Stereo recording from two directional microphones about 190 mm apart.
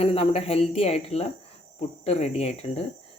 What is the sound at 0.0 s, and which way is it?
Speech, 30° left (ahead or behind).